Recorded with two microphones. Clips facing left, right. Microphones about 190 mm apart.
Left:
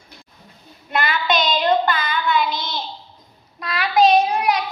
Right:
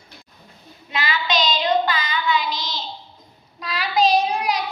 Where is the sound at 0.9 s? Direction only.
55° left (ahead or behind).